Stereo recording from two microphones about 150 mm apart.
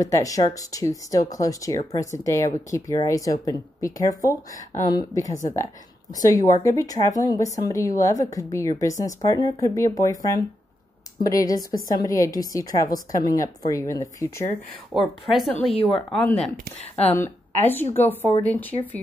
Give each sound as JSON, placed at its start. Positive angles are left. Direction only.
{"t": 0.0, "sound": "speech", "side_deg": 20}
{"t": 15.0, "sound": "a woman's voice", "side_deg": 0}
{"t": 16.7, "sound": "speech", "side_deg": 45}
{"t": 17.1, "sound": "a woman's voice", "side_deg": 15}